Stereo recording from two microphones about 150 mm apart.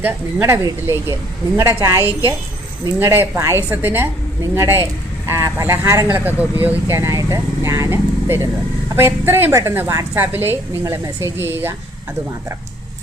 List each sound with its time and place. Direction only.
0.0 s a woman's voice: 15° right (ahead or behind)